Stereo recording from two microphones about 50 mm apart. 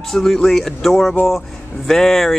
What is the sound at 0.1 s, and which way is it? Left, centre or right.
A man's voice, centre.